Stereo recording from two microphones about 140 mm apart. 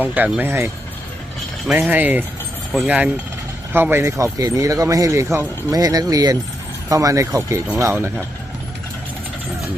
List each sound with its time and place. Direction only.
0.0 s speech: 10° right (ahead or behind)